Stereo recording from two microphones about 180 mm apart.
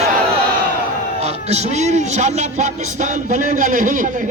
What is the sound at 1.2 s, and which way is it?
Speech, 35° right (ahead or behind).